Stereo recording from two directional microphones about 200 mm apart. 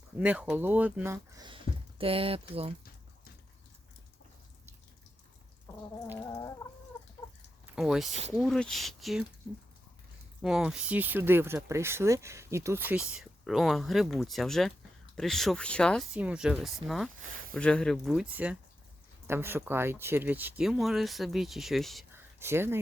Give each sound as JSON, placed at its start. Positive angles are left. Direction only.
{"t": 0.2, "sound": "speech", "side_deg": -5}
{"t": 1.5, "sound": "speech", "side_deg": -25}
{"t": 6.1, "sound": "a sound", "side_deg": 15}
{"t": 7.8, "sound": "speech", "side_deg": 0}
{"t": 10.4, "sound": "speech", "side_deg": 0}
{"t": 22.1, "sound": "a sound", "side_deg": -10}